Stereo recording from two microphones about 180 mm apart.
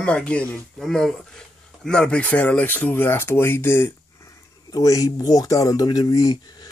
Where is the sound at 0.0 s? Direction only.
5° left (ahead or behind).